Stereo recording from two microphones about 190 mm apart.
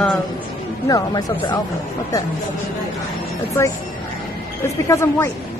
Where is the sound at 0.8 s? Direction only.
20° left (ahead or behind).